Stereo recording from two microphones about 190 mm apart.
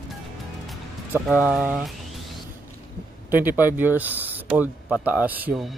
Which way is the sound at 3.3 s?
10° right (ahead or behind).